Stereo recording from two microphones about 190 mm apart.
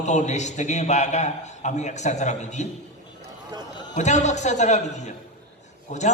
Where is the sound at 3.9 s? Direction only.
40° left (ahead or behind).